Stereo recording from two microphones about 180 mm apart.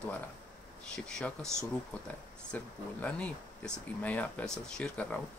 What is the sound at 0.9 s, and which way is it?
Speech, 5° left (ahead or behind).